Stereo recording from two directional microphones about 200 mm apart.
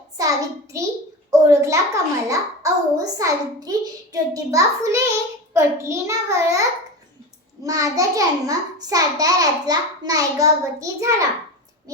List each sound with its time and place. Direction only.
0.2 s a child's voice: 15° right (ahead or behind)